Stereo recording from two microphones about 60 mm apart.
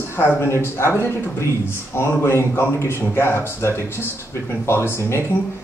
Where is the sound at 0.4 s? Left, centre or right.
Left.